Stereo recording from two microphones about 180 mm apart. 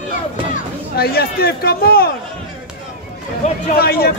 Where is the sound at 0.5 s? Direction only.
60° left (ahead or behind).